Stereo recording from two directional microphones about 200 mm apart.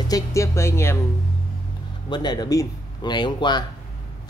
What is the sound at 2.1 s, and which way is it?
Speech, 20° left (ahead or behind).